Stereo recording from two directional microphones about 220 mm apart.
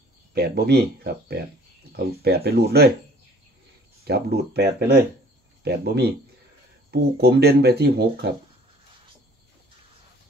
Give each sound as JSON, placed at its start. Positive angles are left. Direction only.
{"t": 0.3, "sound": "speech", "side_deg": -45}
{"t": 4.1, "sound": "speech", "side_deg": -45}